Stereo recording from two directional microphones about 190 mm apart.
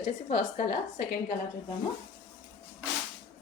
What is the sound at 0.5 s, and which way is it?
Speech, 50° left (ahead or behind).